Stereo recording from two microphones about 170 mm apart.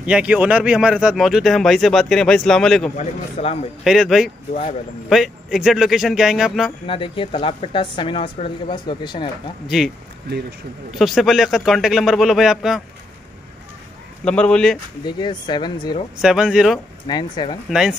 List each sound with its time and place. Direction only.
0.0 s speech: 5° right (ahead or behind)
3.0 s a woman's voice: 40° left (ahead or behind)
3.8 s speech: centre (ahead or behind)
6.9 s a woman's voice: 30° left (ahead or behind)
10.9 s speech: centre (ahead or behind)
14.2 s speech: 5° left (ahead or behind)
15.0 s speech: 25° left (ahead or behind)
16.2 s speech: 5° right (ahead or behind)
17.1 s speech: 25° left (ahead or behind)
17.6 s speech: 5° right (ahead or behind)